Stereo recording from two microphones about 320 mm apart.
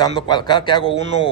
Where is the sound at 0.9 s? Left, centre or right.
Right.